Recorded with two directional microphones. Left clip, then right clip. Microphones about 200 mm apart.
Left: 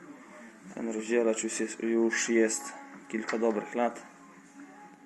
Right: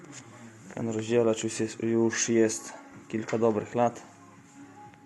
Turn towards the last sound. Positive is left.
turn(degrees=-25)  # may be behind; listen again after turning